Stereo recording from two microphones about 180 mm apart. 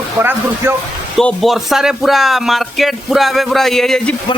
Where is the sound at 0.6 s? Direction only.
15° right (ahead or behind).